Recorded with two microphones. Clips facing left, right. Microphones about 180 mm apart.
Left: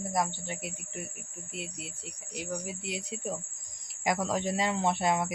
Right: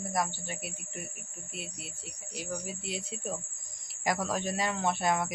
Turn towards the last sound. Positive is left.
turn(degrees=25)  # may be behind; listen again after turning